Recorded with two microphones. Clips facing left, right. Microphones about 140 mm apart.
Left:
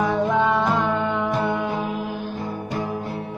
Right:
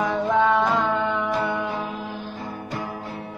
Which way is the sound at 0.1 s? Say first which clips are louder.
Even; 10° left (ahead or behind).